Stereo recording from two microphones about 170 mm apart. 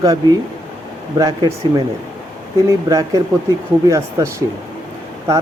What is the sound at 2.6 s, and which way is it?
Speech, 20° right (ahead or behind).